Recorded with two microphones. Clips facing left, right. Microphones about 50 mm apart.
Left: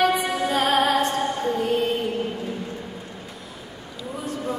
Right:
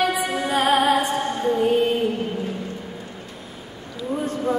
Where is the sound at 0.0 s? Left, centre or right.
Centre.